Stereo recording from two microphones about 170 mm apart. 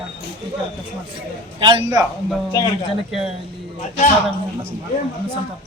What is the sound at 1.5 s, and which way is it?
Speech, 25° right (ahead or behind).